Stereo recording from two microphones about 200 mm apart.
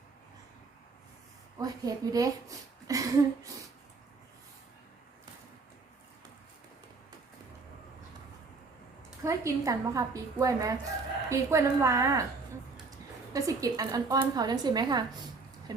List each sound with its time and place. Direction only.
1.5 s a woman's voice: 20° right (ahead or behind)
2.8 s a sound: 15° right (ahead or behind)
9.2 s a woman's voice: 15° right (ahead or behind)
13.3 s a woman's voice: 15° right (ahead or behind)